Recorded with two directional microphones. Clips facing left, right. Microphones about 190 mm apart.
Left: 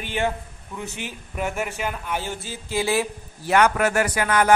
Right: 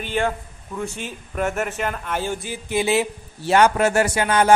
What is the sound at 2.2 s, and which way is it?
Speech, 15° right (ahead or behind).